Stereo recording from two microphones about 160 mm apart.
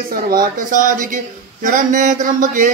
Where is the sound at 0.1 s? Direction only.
65° right (ahead or behind).